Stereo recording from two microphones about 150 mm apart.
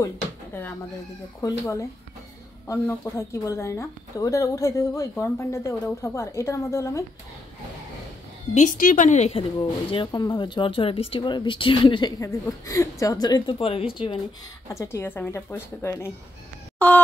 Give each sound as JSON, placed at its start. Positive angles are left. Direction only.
{"t": 1.4, "sound": "speech", "side_deg": 20}
{"t": 8.5, "sound": "a woman's voice", "side_deg": 60}
{"t": 9.6, "sound": "speech", "side_deg": 35}
{"t": 14.7, "sound": "a woman's voice", "side_deg": 15}
{"t": 16.7, "sound": "a sound", "side_deg": 10}